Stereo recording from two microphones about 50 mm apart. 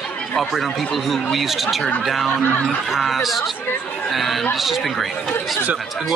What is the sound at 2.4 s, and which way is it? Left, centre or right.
Speech, left.